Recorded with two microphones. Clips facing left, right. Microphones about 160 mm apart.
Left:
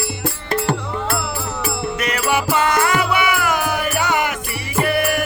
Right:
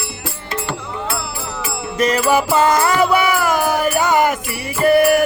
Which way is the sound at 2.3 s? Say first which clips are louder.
Right 1 dB; 35° right (ahead or behind).